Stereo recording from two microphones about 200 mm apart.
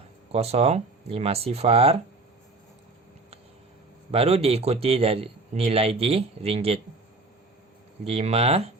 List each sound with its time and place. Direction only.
0.3 s speech: 30° right (ahead or behind)
4.1 s a man's voice: 30° right (ahead or behind)
8.0 s speech: 30° right (ahead or behind)